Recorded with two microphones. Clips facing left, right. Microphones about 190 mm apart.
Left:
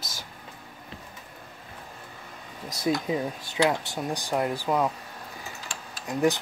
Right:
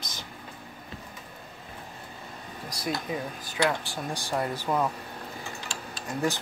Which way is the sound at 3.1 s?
25° left (ahead or behind).